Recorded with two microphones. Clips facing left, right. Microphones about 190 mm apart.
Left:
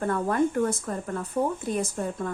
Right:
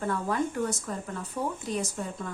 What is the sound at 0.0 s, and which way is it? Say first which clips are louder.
A woman's voice: left 5 dB; 50° left (ahead or behind).